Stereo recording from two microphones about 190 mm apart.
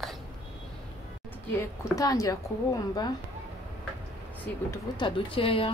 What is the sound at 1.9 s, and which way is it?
Speech, 20° left (ahead or behind).